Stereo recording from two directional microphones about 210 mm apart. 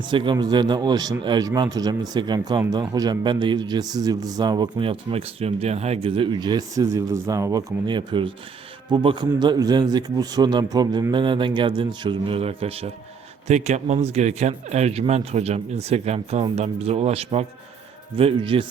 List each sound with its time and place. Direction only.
0.1 s a man's voice: 20° right (ahead or behind)